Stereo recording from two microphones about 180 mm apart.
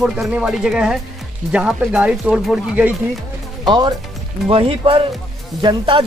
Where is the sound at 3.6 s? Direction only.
25° right (ahead or behind).